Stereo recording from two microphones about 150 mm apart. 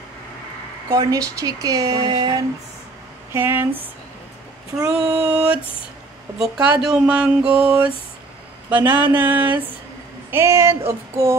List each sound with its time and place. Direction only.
0.8 s speech: 20° right (ahead or behind)
3.3 s speech: 15° right (ahead or behind)